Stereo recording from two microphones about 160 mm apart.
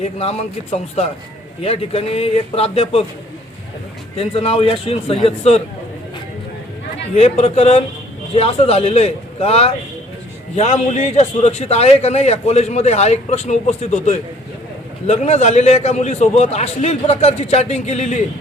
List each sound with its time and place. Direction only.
0.0 s a man's voice: 40° left (ahead or behind)
4.2 s a man's voice: 35° left (ahead or behind)
7.2 s a man's voice: 40° left (ahead or behind)